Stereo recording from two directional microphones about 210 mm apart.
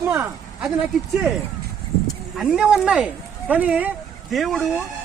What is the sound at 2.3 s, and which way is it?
A man's voice, 5° right (ahead or behind).